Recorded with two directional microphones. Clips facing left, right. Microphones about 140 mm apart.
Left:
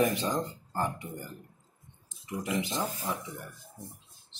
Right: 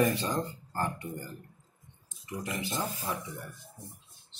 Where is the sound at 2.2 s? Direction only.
15° left (ahead or behind).